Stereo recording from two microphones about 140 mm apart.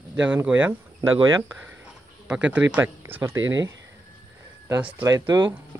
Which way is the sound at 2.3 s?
10° right (ahead or behind).